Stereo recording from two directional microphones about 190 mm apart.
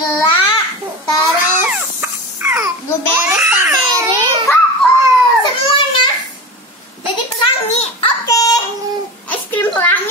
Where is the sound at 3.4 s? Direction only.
5° right (ahead or behind).